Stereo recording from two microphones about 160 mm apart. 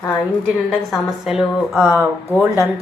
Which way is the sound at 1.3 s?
5° right (ahead or behind).